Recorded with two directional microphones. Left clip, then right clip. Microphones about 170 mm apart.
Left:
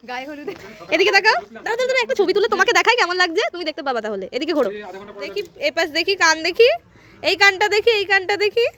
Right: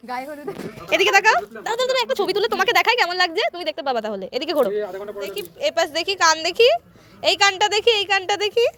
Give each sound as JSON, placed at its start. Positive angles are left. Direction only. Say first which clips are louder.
{"t": 0.1, "sound": "speech", "louder": "even", "side_deg": 10}
{"t": 0.9, "sound": "a woman's voice", "louder": "left 1 dB", "side_deg": 30}